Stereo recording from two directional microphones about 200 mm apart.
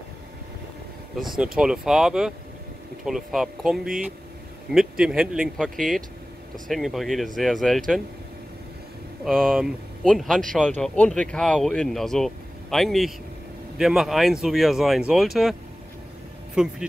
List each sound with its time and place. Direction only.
1.3 s speech: centre (ahead or behind)
9.2 s speech: centre (ahead or behind)
16.6 s speech: 5° right (ahead or behind)